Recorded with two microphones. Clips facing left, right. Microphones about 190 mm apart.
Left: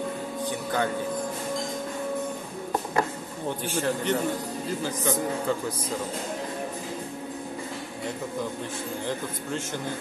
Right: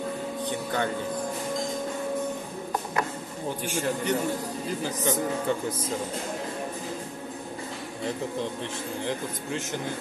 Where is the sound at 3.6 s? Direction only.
15° right (ahead or behind).